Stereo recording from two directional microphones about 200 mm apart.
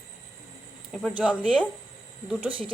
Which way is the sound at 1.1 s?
5° right (ahead or behind).